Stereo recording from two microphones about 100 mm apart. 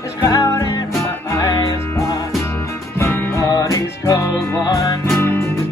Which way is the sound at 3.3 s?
30° left (ahead or behind).